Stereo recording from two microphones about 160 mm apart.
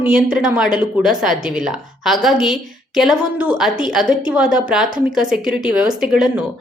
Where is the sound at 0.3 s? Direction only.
5° right (ahead or behind).